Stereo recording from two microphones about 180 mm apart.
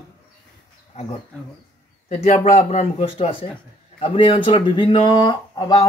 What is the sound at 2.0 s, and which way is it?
A man's voice, 40° left (ahead or behind).